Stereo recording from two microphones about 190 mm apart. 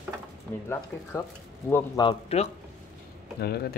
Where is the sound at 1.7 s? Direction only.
20° left (ahead or behind).